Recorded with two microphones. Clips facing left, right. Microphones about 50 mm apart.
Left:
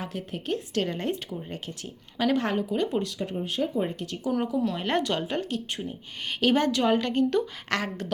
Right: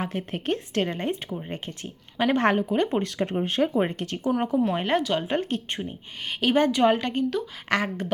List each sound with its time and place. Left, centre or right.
0.0 s a woman's voice: right
0.8 s speech: right
2.3 s speech: right
3.2 s speech: right
4.5 s a woman's voice: right
4.9 s a woman's voice: centre
5.3 s a woman's voice: right
6.4 s a woman's voice: centre